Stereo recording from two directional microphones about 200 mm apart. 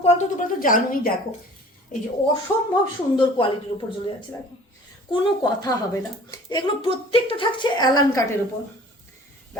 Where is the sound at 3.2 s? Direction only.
25° left (ahead or behind).